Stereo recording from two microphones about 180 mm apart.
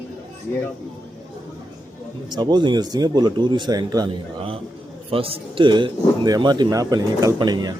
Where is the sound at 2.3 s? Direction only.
25° right (ahead or behind).